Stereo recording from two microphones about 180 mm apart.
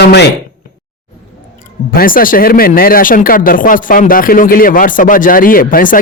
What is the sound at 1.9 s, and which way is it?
Speech, 50° left (ahead or behind).